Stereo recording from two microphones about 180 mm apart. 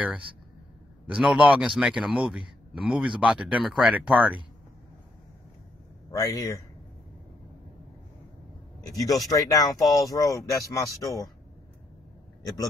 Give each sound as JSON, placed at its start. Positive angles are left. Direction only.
{"t": 1.0, "sound": "speech", "side_deg": -5}
{"t": 6.1, "sound": "speech", "side_deg": 20}
{"t": 8.8, "sound": "speech", "side_deg": 20}